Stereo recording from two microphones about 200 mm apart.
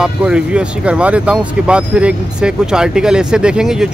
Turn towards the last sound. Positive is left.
turn(degrees=-5)  # may be behind; listen again after turning